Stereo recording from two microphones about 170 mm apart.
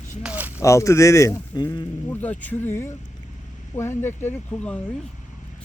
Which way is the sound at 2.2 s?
10° left (ahead or behind).